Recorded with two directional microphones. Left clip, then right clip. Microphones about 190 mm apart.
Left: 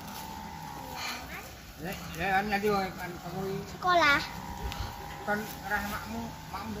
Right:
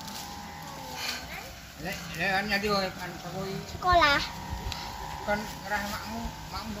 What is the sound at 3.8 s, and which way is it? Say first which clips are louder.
Speech: right 2 dB; 10° left (ahead or behind).